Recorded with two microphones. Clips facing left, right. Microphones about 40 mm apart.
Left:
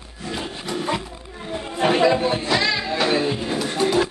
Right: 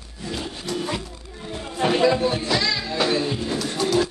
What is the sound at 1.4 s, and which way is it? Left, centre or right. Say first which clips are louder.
Music: left 2 dB; centre.